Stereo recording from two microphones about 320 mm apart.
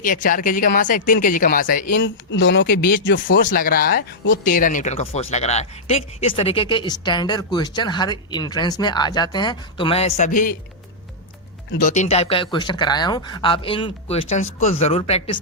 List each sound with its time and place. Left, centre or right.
0.0 s speech: left
11.7 s speech: left